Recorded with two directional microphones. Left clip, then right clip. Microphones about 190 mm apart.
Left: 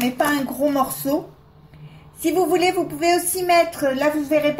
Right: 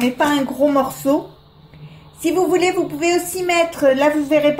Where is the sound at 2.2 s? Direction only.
15° right (ahead or behind).